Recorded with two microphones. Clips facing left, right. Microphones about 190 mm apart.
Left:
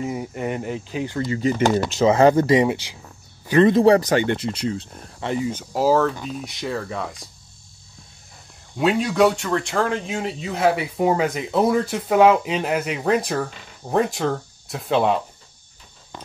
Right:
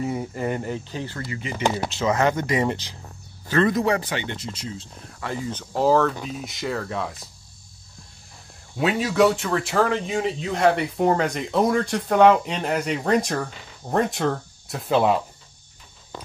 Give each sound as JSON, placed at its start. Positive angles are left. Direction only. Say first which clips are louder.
{"t": 0.0, "sound": "speech", "louder": "even", "side_deg": 5}
{"t": 1.2, "sound": "speech", "louder": "left 10 dB", "side_deg": 30}
{"t": 1.5, "sound": "speech", "louder": "left 4 dB", "side_deg": 45}
{"t": 2.0, "sound": "speech", "louder": "left 7 dB", "side_deg": 30}
{"t": 2.6, "sound": "speech", "louder": "left 4 dB", "side_deg": 10}
{"t": 3.7, "sound": "speech", "louder": "left 8 dB", "side_deg": 35}
{"t": 5.2, "sound": "speech", "louder": "left 6 dB", "side_deg": 20}
{"t": 5.5, "sound": "speech", "louder": "right 1 dB", "side_deg": 10}
{"t": 8.7, "sound": "speech", "louder": "left 2 dB", "side_deg": 0}